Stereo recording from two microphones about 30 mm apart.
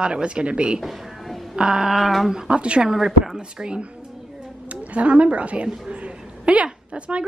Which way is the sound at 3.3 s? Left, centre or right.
Right.